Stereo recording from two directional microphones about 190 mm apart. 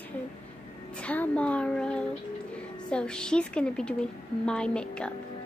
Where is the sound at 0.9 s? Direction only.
10° left (ahead or behind).